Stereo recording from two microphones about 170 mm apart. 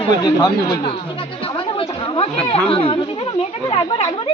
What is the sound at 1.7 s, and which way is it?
Chatter, 35° left (ahead or behind).